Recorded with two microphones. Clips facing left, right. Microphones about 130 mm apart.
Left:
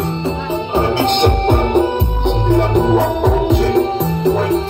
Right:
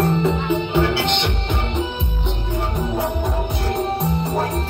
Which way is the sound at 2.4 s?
85° left.